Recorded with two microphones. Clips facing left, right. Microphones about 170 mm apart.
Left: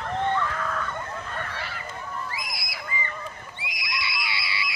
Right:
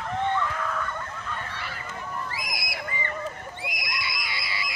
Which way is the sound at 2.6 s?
55° right (ahead or behind).